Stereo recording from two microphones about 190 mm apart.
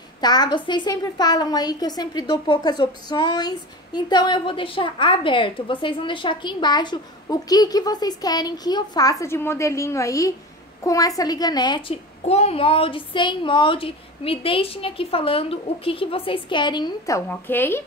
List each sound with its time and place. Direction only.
0.2 s a woman's voice: 20° left (ahead or behind)